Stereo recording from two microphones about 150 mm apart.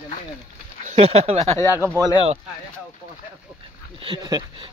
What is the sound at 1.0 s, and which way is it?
Speech, 40° right (ahead or behind).